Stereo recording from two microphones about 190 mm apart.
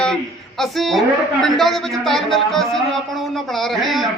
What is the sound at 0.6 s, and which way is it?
A woman's voice, centre (ahead or behind).